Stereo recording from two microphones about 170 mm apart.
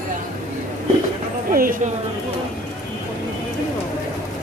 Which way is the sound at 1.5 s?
55° right (ahead or behind).